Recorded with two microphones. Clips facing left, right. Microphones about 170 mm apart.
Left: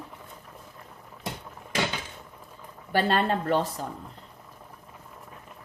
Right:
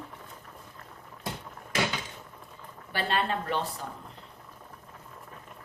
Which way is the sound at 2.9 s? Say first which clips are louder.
Left 5 dB; 40° left (ahead or behind).